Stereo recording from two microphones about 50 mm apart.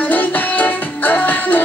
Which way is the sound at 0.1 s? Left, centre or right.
Left.